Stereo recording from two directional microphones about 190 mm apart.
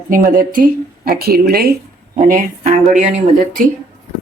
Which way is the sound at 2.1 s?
40° right (ahead or behind).